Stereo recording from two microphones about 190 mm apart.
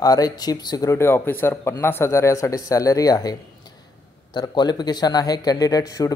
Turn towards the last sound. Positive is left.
turn(degrees=20)  # may be behind; listen again after turning